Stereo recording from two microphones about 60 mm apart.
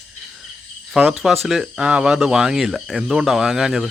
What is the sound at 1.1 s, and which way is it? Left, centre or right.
Speech, centre.